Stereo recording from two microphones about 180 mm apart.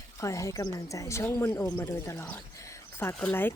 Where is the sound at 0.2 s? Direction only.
15° left (ahead or behind).